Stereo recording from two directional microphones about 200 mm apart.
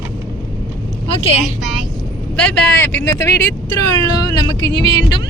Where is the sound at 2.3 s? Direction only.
10° left (ahead or behind).